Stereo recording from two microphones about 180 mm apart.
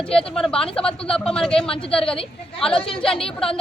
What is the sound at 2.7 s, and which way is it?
Speech, 30° left (ahead or behind).